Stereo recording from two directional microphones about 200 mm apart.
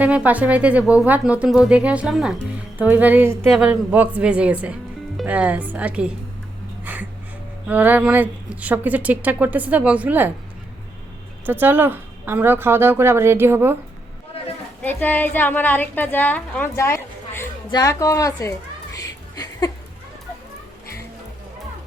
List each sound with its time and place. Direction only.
0.0 s a woman's voice: 5° right (ahead or behind)
7.7 s a woman's voice: 10° right (ahead or behind)
11.4 s a woman's voice: 10° right (ahead or behind)
14.8 s a woman's voice: 10° left (ahead or behind)
18.9 s a sound: 15° left (ahead or behind)